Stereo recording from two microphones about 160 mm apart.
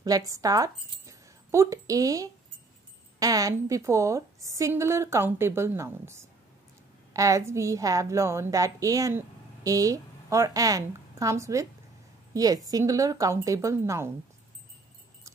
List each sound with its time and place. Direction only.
0.0 s a woman's voice: 20° right (ahead or behind)